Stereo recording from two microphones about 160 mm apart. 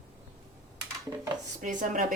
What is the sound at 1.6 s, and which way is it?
Speech, 55° right (ahead or behind).